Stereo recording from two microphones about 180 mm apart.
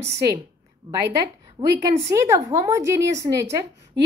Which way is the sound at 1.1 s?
20° right (ahead or behind).